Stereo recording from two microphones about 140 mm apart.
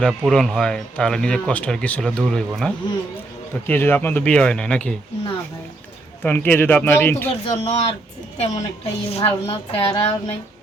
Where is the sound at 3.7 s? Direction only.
15° left (ahead or behind).